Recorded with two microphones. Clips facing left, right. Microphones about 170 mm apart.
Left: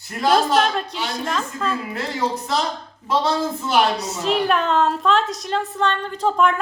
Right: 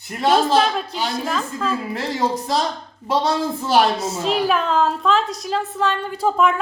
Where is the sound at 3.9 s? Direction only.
Centre (ahead or behind).